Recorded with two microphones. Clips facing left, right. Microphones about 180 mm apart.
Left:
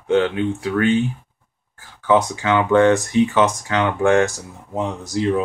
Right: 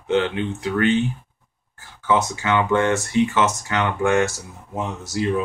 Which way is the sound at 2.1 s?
15° left (ahead or behind).